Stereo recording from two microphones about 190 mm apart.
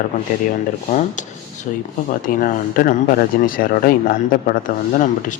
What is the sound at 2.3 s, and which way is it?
Speech, 45° left (ahead or behind).